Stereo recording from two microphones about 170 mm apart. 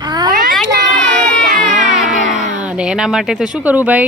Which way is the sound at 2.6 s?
5° right (ahead or behind).